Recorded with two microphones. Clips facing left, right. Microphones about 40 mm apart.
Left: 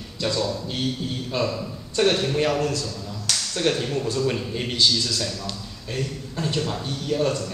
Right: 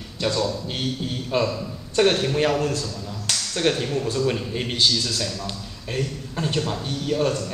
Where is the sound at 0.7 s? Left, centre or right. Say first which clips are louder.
Even; centre.